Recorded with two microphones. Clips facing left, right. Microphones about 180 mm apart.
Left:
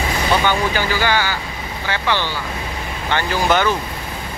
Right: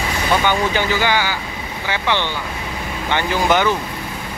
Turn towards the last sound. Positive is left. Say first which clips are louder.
# right 1 dB
turn(degrees=-15)  # may be behind; listen again after turning